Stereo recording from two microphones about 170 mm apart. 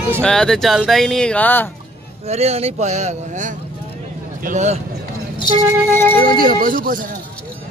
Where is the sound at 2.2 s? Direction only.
40° right (ahead or behind).